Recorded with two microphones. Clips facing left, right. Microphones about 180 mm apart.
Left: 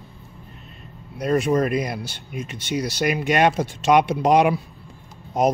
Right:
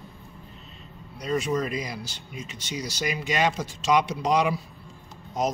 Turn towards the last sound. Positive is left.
turn(degrees=60)  # may be behind; listen again after turning